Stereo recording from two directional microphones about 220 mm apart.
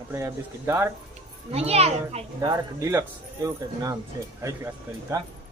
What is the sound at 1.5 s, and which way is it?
Speech, 30° right (ahead or behind).